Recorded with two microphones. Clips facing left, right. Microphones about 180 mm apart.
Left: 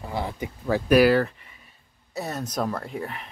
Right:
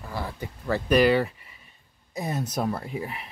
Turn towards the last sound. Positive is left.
turn(degrees=-5)  # may be behind; listen again after turning